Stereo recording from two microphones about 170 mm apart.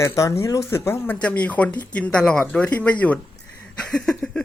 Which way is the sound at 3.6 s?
5° left (ahead or behind).